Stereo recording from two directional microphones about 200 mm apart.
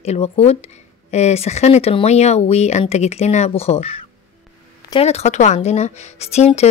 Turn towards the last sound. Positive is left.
turn(degrees=30)  # may be behind; listen again after turning